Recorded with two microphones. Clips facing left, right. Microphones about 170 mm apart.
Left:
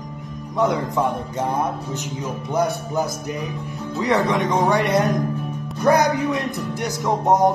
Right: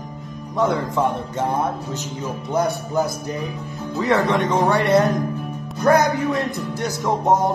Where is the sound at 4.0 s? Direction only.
15° left (ahead or behind).